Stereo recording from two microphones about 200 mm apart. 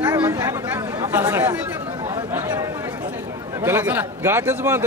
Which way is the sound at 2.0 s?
20° right (ahead or behind).